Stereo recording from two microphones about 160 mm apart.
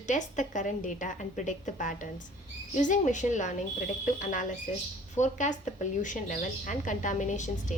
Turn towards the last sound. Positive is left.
turn(degrees=50)  # may be behind; listen again after turning